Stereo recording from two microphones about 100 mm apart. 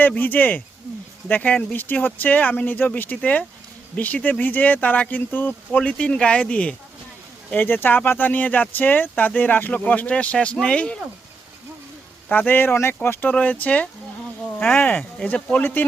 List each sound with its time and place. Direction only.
0.0 s speech: 20° left (ahead or behind)
12.3 s speech: 20° left (ahead or behind)